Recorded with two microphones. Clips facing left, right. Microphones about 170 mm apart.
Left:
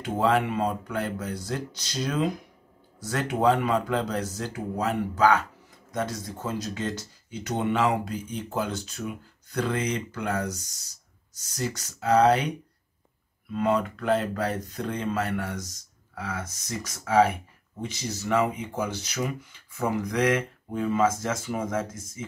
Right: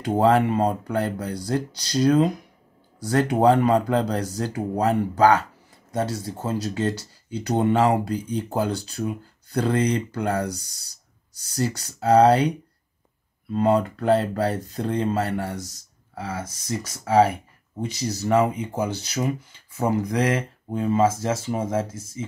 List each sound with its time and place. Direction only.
0.0 s speech: 35° right (ahead or behind)